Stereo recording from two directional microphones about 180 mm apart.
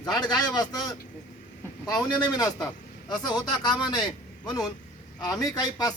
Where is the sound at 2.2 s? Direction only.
20° left (ahead or behind).